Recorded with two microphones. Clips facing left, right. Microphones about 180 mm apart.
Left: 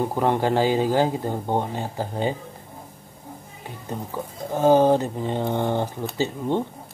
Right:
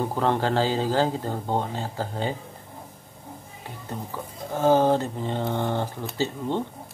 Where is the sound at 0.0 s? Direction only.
15° left (ahead or behind).